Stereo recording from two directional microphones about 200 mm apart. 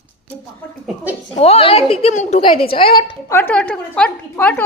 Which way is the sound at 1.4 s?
30° left (ahead or behind).